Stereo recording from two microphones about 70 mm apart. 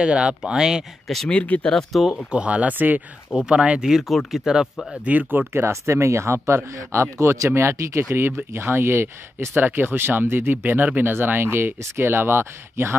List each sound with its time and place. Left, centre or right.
0.0 s speech: centre
1.3 s speech: centre
1.7 s speech: centre
2.3 s speech: centre
3.9 s speech: centre
5.0 s speech: right
5.5 s speech: right